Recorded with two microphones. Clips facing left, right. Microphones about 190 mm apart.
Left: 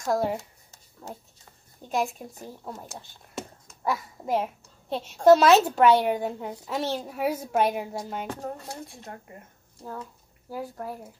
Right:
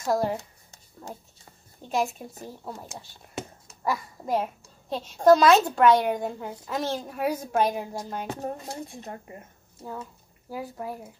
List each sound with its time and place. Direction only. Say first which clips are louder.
0.0 s a child's voice: even; centre (ahead or behind)
1.9 s a child's voice: right 1 dB; centre (ahead or behind)
8.3 s speech: right 2 dB; 20° right (ahead or behind)
10.5 s a child's voice: even; 5° right (ahead or behind)